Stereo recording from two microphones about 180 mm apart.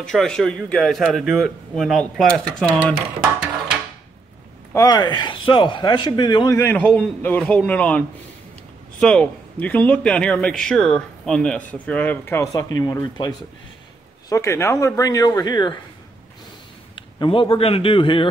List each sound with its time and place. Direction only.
0.0 s speech: 5° left (ahead or behind)
4.7 s a man's voice: 20° left (ahead or behind)
9.0 s speech: 5° left (ahead or behind); by 13.3 s 25° left (ahead or behind)
14.3 s a man's voice: 15° left (ahead or behind)
16.9 s speech: 30° left (ahead or behind)